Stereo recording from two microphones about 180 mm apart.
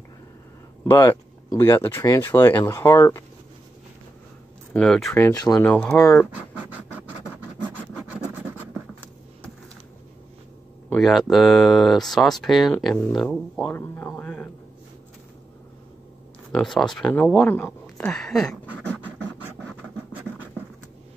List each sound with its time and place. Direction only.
0.8 s speech: 15° left (ahead or behind)
4.7 s speech: centre (ahead or behind)
5.2 s speech: 20° left (ahead or behind)
5.7 s speech: 5° left (ahead or behind)
5.9 s speech: 20° left (ahead or behind)
6.3 s scratch: 10° right (ahead or behind)
10.9 s speech: centre (ahead or behind)
16.5 s speech: 5° left (ahead or behind)